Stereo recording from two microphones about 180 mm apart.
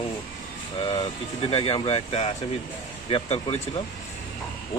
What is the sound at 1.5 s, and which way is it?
Speech, 30° left (ahead or behind).